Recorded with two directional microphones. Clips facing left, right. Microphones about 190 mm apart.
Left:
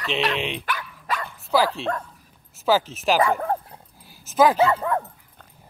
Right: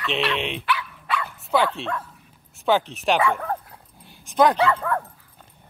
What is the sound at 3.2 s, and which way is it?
Bow-wow, 35° left (ahead or behind).